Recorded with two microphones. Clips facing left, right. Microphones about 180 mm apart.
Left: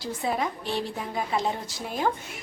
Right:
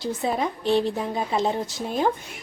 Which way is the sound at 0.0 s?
25° right (ahead or behind).